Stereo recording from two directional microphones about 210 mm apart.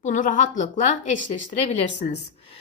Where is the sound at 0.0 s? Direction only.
35° left (ahead or behind).